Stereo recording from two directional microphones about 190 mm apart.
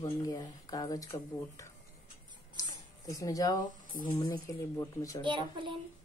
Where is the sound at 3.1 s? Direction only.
20° left (ahead or behind).